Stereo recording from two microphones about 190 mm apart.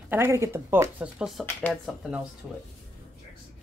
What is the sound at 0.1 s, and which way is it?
Speech, 15° right (ahead or behind).